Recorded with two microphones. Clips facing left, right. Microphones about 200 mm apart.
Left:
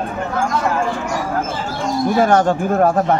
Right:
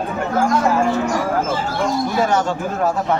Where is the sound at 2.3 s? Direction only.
55° left (ahead or behind).